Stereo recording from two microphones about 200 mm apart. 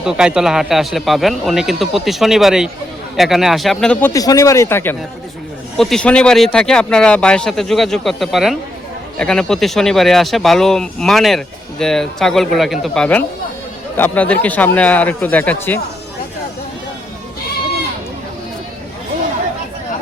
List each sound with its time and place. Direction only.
0.0 s speech: 5° right (ahead or behind)
4.1 s speech: 15° left (ahead or behind)